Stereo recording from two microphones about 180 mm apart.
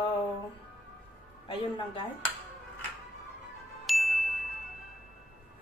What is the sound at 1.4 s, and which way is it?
Speech, 30° left (ahead or behind).